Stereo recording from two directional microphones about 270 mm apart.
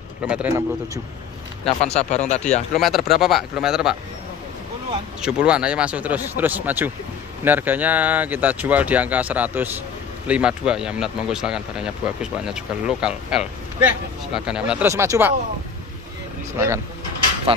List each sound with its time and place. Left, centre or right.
0.3 s speech: centre
2.0 s speech: left
2.7 s speech: centre
5.2 s speech: centre
16.5 s speech: centre